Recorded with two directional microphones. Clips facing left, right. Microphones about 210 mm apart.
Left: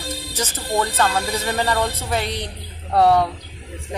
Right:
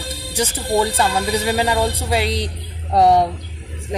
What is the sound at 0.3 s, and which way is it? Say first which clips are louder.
A woman's voice: right 6 dB; 15° right (ahead or behind).